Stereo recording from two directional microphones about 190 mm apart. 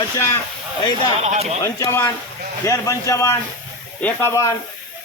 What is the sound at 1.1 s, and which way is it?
Speech, 35° right (ahead or behind).